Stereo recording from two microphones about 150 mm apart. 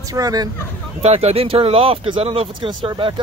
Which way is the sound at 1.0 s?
45° right (ahead or behind).